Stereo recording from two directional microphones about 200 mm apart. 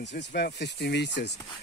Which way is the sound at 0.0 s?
60° left (ahead or behind).